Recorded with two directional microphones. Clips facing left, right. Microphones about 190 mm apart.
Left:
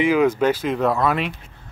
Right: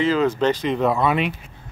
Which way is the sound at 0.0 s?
10° left (ahead or behind).